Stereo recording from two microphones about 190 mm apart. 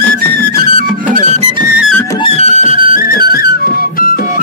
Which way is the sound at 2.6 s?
45° left (ahead or behind).